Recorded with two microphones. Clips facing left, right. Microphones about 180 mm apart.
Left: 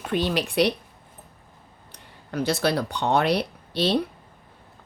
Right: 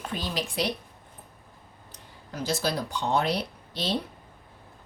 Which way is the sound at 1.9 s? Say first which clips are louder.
Left 8 dB; 65° left (ahead or behind).